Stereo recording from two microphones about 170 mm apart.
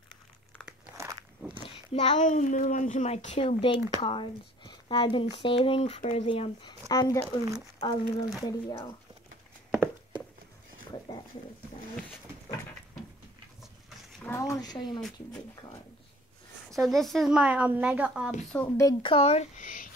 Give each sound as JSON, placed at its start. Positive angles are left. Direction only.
{"t": 1.6, "sound": "a sound", "side_deg": 30}
{"t": 2.1, "sound": "speech", "side_deg": 45}
{"t": 6.9, "sound": "speech", "side_deg": 20}
{"t": 14.2, "sound": "speech", "side_deg": 15}
{"t": 16.7, "sound": "a woman's voice", "side_deg": 0}
{"t": 18.5, "sound": "speech", "side_deg": 10}
{"t": 18.9, "sound": "speech", "side_deg": 30}